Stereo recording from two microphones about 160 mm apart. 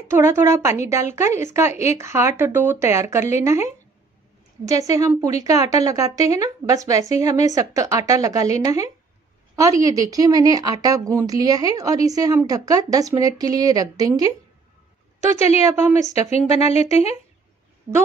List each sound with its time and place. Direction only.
0.1 s a woman's voice: 15° right (ahead or behind)
15.1 s a woman's voice: 45° left (ahead or behind)
15.7 s a woman's voice: 15° right (ahead or behind)
16.0 s speech: 45° left (ahead or behind)